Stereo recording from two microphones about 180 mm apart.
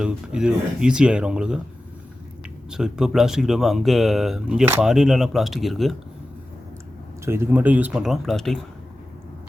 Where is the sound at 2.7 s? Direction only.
5° right (ahead or behind).